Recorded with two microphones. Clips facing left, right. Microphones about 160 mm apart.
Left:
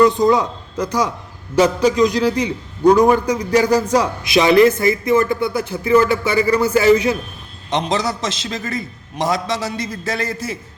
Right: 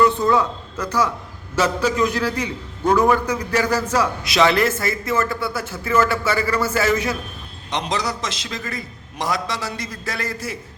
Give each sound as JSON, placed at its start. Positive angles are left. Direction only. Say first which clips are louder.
{"t": 0.3, "sound": "a man's voice", "louder": "left 3 dB", "side_deg": 15}